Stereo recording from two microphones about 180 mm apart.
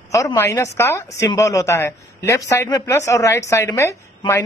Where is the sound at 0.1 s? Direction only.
20° left (ahead or behind).